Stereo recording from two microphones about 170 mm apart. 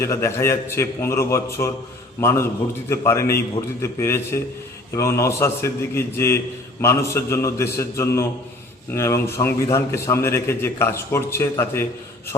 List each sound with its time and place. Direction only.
0.0 s a man's voice: 15° left (ahead or behind)